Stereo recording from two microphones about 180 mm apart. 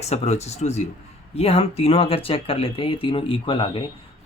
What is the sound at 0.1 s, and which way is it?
Speech, 35° left (ahead or behind).